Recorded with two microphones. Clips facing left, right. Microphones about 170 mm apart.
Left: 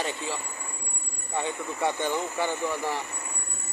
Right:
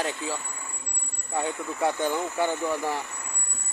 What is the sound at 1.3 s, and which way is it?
Speech, 5° right (ahead or behind).